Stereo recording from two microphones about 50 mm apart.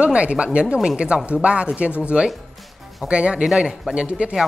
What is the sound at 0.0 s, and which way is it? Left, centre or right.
A woman's voice, right.